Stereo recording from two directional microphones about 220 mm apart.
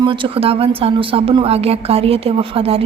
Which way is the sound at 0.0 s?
20° right (ahead or behind).